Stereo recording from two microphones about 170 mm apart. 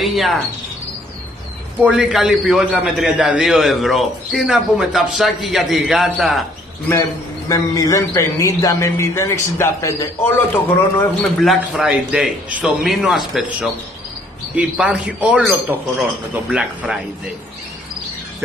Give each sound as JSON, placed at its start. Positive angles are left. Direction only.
{"t": 0.0, "sound": "a man's voice", "side_deg": 0}
{"t": 1.8, "sound": "a man's voice", "side_deg": -5}
{"t": 6.9, "sound": "a man's voice", "side_deg": 20}
{"t": 11.0, "sound": "a man's voice", "side_deg": 0}